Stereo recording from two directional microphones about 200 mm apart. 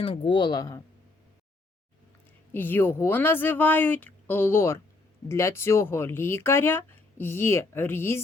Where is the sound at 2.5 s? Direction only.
10° left (ahead or behind).